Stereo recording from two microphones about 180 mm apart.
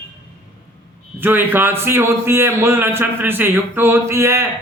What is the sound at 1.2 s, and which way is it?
A man's voice, 10° right (ahead or behind).